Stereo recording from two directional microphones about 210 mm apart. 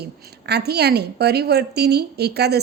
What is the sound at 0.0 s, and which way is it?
A woman's voice, 50° right (ahead or behind).